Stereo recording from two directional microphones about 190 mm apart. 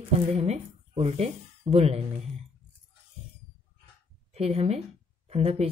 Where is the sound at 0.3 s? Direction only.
35° right (ahead or behind).